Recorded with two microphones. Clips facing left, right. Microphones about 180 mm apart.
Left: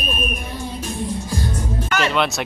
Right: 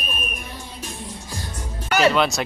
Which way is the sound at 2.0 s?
Centre (ahead or behind).